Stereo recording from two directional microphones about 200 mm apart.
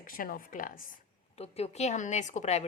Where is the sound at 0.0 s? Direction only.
45° left (ahead or behind).